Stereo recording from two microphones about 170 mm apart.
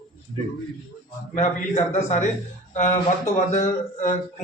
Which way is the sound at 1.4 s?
45° left (ahead or behind).